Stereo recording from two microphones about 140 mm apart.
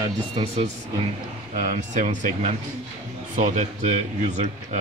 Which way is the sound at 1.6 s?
60° right (ahead or behind).